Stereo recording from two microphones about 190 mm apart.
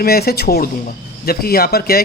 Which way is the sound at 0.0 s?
55° left (ahead or behind).